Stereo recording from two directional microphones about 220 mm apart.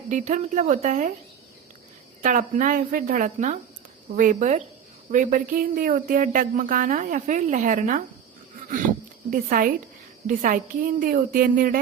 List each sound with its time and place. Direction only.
0.1 s speech: 35° right (ahead or behind)
2.2 s speech: 35° right (ahead or behind)
9.3 s speech: 40° right (ahead or behind)